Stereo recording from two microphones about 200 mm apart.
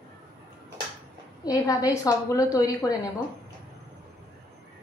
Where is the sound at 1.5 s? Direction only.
20° left (ahead or behind).